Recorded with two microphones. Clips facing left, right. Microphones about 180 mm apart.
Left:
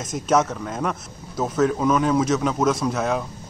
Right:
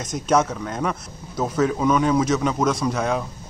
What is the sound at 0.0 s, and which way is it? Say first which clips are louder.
A man's voice: even; 5° left (ahead or behind).